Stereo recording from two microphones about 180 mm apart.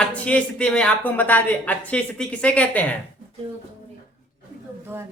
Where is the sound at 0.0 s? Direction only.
5° left (ahead or behind).